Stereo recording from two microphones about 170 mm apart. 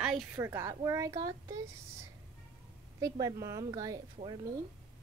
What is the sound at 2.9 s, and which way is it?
Speech, 20° right (ahead or behind).